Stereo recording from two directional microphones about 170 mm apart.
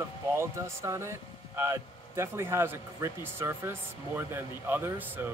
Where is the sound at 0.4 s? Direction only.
15° right (ahead or behind).